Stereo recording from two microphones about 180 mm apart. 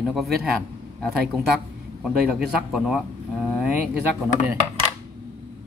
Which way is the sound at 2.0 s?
Centre (ahead or behind).